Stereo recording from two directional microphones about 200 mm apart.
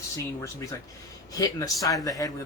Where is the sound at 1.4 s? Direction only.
15° left (ahead or behind).